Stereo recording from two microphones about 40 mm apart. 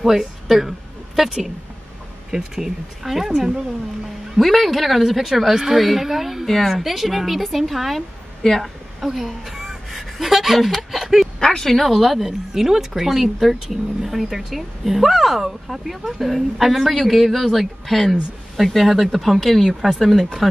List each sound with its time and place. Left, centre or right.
0.0 s a woman's voice: centre
3.3 s speech: right
4.4 s speech: centre
6.4 s a woman's voice: centre
11.3 s speech: centre
11.7 s speech: centre